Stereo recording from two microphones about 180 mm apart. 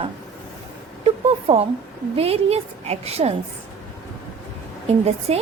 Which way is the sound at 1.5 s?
35° right (ahead or behind).